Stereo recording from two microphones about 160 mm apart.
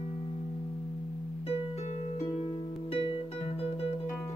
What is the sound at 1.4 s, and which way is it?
Music, 40° left (ahead or behind).